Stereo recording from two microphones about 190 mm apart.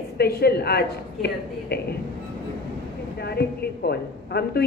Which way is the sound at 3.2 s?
55° left (ahead or behind).